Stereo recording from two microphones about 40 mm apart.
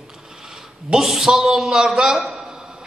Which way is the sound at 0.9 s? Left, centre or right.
Centre.